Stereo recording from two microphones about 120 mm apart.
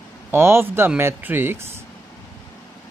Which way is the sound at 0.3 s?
20° right (ahead or behind).